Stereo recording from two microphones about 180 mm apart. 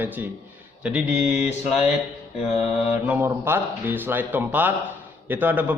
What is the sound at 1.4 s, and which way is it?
Mantra, 40° left (ahead or behind).